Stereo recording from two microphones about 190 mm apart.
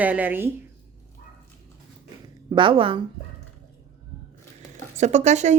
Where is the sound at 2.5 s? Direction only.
25° right (ahead or behind).